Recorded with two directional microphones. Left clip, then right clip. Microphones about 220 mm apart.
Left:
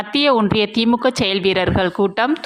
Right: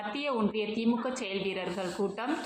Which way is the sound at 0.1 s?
45° left (ahead or behind).